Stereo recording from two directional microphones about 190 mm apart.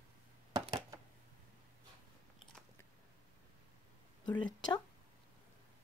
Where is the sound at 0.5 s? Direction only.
20° right (ahead or behind).